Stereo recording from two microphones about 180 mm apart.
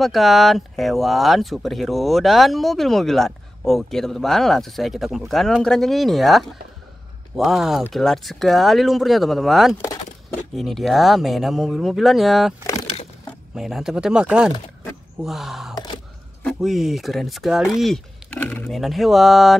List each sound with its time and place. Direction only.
0.0 s speech: centre (ahead or behind)
13.6 s speech: centre (ahead or behind)
15.7 s a sound: 20° left (ahead or behind)
16.4 s speech: centre (ahead or behind)